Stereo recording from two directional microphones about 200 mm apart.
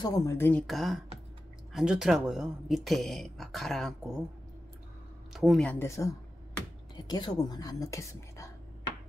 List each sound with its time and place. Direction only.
0.0 s speech: 15° left (ahead or behind)
5.3 s speech: centre (ahead or behind); by 8.9 s 15° left (ahead or behind)